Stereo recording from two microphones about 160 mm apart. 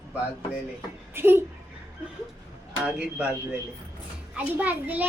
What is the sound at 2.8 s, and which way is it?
Speech, 5° right (ahead or behind).